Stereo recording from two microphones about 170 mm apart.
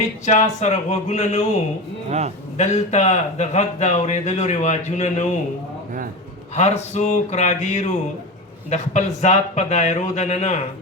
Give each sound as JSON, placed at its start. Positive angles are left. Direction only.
{"t": 0.3, "sound": "speech", "side_deg": 45}
{"t": 2.0, "sound": "speech", "side_deg": -40}
{"t": 2.6, "sound": "a man's voice", "side_deg": 45}
{"t": 6.6, "sound": "speech", "side_deg": 40}